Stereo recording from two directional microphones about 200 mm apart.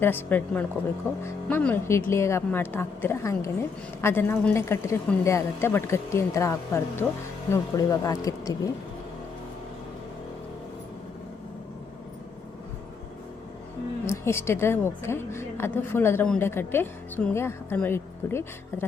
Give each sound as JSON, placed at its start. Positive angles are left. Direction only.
{"t": 0.0, "sound": "a woman's voice", "side_deg": 10}
{"t": 14.1, "sound": "a woman's voice", "side_deg": 10}